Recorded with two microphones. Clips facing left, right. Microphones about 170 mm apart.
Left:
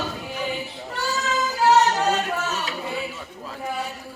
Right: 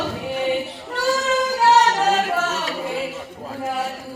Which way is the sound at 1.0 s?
80° right.